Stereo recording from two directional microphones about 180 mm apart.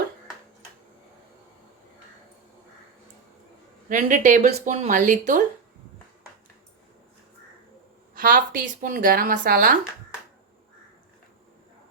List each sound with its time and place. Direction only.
3.8 s a woman's voice: 45° right (ahead or behind)
8.1 s a woman's voice: 50° right (ahead or behind)